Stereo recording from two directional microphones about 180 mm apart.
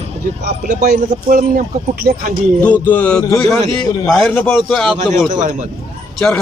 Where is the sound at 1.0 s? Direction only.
45° right (ahead or behind).